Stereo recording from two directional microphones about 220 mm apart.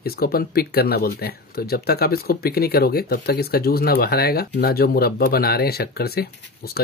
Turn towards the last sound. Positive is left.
turn(degrees=45)  # may be behind; listen again after turning